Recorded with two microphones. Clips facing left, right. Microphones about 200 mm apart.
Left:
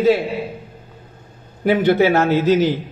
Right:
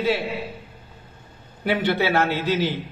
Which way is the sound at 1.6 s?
45° left (ahead or behind).